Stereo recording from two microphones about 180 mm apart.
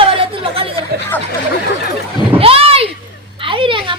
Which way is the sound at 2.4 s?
30° right (ahead or behind).